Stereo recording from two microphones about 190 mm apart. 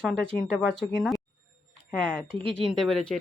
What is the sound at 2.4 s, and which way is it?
Speech, 30° right (ahead or behind).